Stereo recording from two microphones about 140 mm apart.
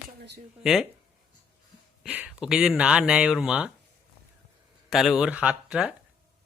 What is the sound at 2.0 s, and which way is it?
Speech, 10° right (ahead or behind).